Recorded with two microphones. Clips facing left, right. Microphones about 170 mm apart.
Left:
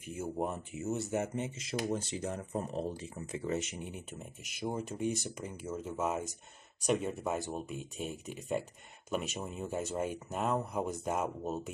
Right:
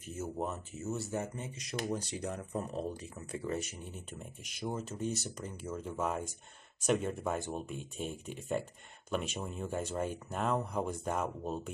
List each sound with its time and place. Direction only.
0.0 s speech: 10° left (ahead or behind)